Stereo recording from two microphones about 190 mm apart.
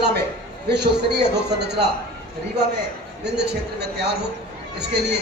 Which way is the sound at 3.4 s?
60° right (ahead or behind).